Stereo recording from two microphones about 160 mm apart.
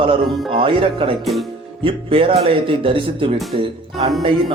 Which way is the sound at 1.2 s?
Centre (ahead or behind).